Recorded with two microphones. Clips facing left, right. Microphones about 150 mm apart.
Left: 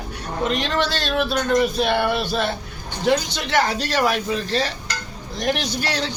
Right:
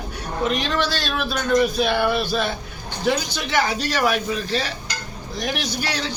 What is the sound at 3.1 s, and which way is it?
Speech, 5° right (ahead or behind).